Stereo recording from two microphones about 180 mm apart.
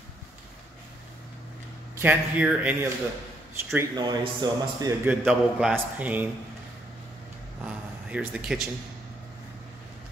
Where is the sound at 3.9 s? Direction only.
25° right (ahead or behind).